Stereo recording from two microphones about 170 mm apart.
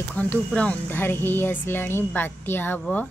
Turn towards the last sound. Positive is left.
turn(degrees=10)  # may be behind; listen again after turning